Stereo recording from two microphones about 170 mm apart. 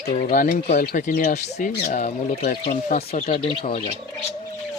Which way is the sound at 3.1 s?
35° left (ahead or behind).